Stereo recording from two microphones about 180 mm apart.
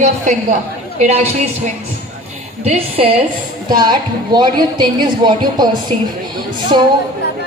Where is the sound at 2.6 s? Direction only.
35° right (ahead or behind).